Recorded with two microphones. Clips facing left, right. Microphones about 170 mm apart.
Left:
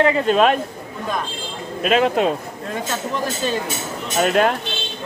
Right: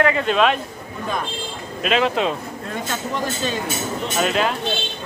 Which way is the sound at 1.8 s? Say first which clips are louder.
Left 3 dB; 45° left (ahead or behind).